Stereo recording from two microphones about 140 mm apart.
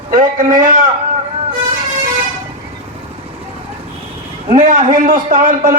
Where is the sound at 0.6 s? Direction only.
70° right (ahead or behind).